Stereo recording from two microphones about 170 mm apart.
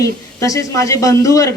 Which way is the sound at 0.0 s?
20° left (ahead or behind).